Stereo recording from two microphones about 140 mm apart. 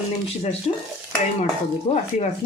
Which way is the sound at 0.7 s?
50° left (ahead or behind).